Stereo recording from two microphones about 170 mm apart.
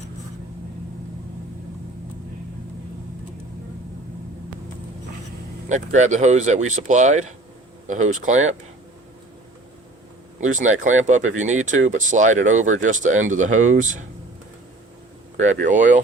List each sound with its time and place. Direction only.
5.6 s speech: 45° right (ahead or behind)
10.6 s speech: 45° right (ahead or behind)
15.4 s speech: 45° right (ahead or behind)